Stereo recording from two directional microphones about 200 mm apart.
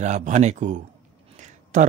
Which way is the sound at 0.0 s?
35° right (ahead or behind).